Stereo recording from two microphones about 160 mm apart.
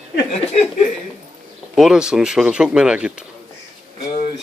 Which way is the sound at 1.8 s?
5° right (ahead or behind).